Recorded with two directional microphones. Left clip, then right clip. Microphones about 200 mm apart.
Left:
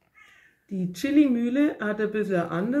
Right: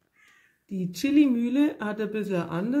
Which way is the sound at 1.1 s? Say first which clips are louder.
Left 1 dB; 40° right (ahead or behind).